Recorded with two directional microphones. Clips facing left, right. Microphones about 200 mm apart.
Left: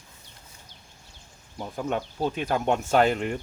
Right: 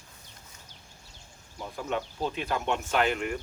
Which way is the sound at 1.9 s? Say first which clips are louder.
Left 2 dB; 45° left (ahead or behind).